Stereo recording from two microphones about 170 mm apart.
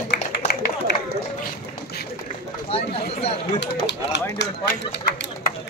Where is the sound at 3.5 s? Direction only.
90° left.